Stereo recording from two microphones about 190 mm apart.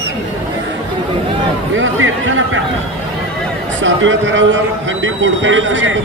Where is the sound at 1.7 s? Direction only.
90° right.